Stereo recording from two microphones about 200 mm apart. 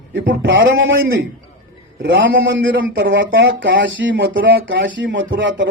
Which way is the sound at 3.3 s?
55° right (ahead or behind).